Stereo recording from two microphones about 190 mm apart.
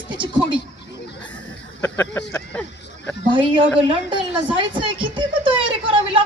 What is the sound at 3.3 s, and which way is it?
Speech, 25° right (ahead or behind).